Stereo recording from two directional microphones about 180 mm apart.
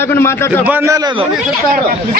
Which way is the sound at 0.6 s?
10° right (ahead or behind).